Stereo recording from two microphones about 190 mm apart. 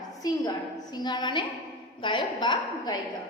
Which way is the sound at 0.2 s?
20° left (ahead or behind).